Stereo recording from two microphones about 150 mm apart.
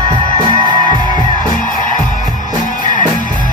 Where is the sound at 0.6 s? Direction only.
30° right (ahead or behind).